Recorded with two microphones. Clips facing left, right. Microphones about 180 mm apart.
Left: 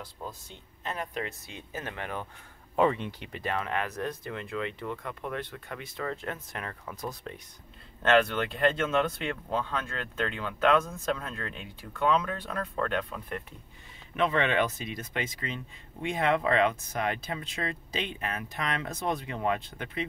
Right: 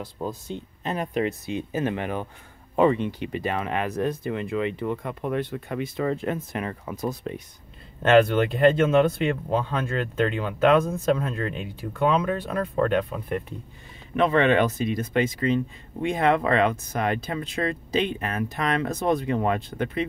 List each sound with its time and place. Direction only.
0.5 s speech: 20° right (ahead or behind)
2.7 s speech: 5° right (ahead or behind)
14.1 s speech: 45° right (ahead or behind)